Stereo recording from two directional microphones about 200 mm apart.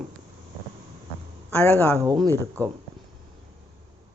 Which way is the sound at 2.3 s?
10° left (ahead or behind).